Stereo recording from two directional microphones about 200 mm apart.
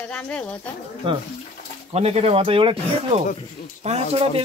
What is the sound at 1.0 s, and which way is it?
A man's voice, 25° right (ahead or behind).